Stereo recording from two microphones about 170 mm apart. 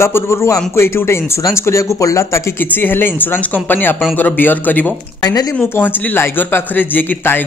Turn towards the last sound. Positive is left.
turn(degrees=10)  # may be behind; listen again after turning